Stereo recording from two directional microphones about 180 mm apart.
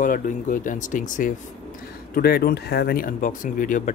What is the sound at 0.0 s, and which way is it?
Speech, 50° left (ahead or behind).